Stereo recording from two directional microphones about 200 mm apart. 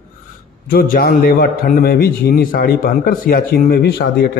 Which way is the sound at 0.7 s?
50° left (ahead or behind).